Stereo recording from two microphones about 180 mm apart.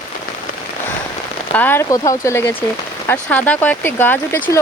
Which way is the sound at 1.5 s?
10° left (ahead or behind).